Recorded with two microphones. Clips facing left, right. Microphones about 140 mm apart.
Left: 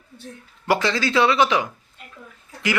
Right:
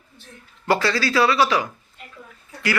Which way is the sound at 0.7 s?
20° left (ahead or behind).